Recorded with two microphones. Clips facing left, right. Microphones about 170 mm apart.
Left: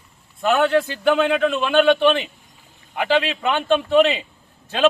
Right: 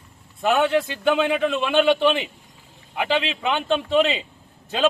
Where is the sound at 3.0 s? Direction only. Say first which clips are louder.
Left 3 dB; 15° right (ahead or behind).